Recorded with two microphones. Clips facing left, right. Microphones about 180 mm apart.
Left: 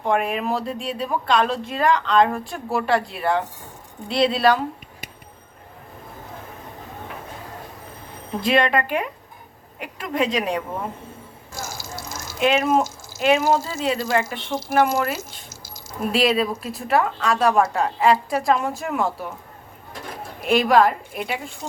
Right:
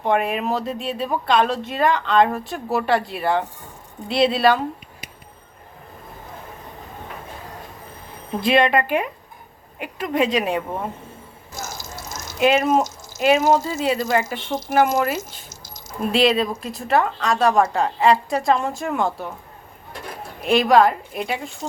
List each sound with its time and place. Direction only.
0.0 s speech: centre (ahead or behind)
8.4 s speech: 5° right (ahead or behind)
11.5 s drip: 25° right (ahead or behind)
12.4 s speech: 5° right (ahead or behind)
20.4 s speech: centre (ahead or behind)